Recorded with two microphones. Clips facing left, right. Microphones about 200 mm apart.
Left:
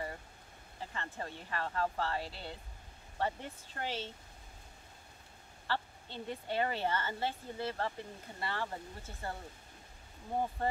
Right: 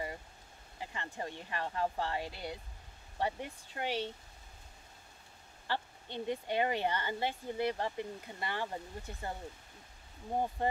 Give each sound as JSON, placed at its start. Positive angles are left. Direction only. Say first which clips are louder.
{"t": 0.7, "sound": "speech", "louder": "right 1 dB", "side_deg": -15}
{"t": 5.7, "sound": "speech", "louder": "even", "side_deg": -15}
{"t": 10.6, "sound": "speech", "louder": "right 2 dB", "side_deg": -15}